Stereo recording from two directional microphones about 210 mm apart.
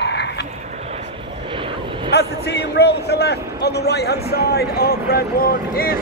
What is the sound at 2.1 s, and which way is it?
A man's voice, 50° left (ahead or behind).